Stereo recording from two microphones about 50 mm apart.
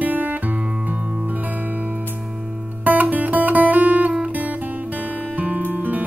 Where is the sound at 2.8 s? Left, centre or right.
Right.